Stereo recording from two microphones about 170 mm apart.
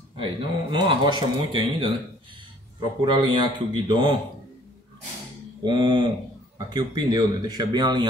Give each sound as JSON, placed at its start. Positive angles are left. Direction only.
{"t": 0.1, "sound": "speech", "side_deg": -30}
{"t": 5.6, "sound": "speech", "side_deg": -25}